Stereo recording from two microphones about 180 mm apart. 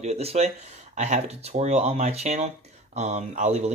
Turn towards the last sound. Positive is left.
turn(degrees=-40)  # may be behind; listen again after turning